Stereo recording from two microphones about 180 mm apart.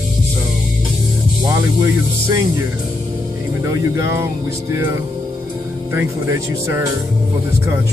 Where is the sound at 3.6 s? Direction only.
15° right (ahead or behind).